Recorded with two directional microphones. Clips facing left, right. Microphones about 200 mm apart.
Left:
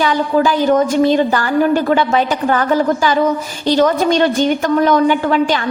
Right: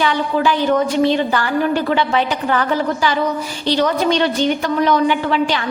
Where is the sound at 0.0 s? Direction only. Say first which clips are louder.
Left 3 dB; 40° left (ahead or behind).